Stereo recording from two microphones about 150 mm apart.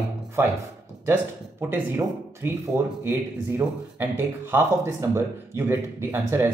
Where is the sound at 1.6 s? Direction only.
15° right (ahead or behind).